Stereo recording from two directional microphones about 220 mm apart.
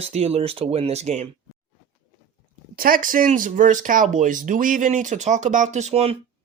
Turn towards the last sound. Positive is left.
turn(degrees=-30)  # may be behind; listen again after turning